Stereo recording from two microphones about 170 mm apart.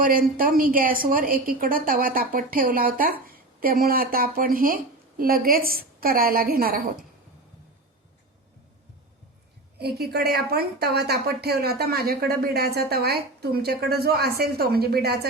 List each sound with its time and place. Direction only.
0.0 s a woman's voice: 55° right (ahead or behind)
9.7 s a woman's voice: 70° right (ahead or behind)